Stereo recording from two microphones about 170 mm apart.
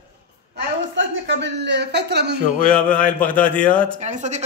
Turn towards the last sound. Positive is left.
turn(degrees=-45)  # may be behind; listen again after turning